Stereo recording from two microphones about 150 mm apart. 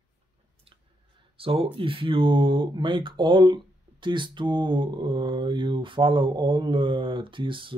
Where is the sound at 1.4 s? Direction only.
40° right (ahead or behind).